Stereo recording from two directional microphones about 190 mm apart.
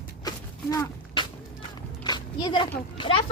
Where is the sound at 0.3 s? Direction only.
20° left (ahead or behind).